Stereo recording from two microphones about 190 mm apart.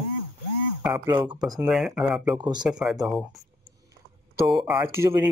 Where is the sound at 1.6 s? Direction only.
Centre (ahead or behind).